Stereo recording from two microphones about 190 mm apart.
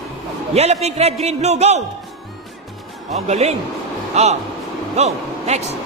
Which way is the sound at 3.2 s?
35° right (ahead or behind).